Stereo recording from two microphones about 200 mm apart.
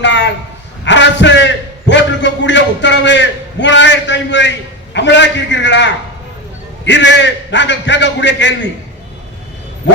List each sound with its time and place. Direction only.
0.0 s a sound: 60° left (ahead or behind)
0.9 s a man's voice: 65° left (ahead or behind)
9.8 s bow-wow: 60° left (ahead or behind)